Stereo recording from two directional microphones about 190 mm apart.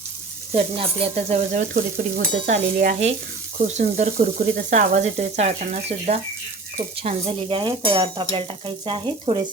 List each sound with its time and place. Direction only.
0.5 s stir: 30° right (ahead or behind)